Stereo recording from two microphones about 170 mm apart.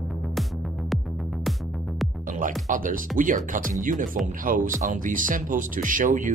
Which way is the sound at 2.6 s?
55° right (ahead or behind).